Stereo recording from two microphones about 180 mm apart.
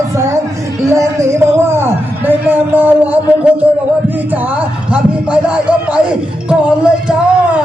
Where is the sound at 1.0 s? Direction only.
15° right (ahead or behind).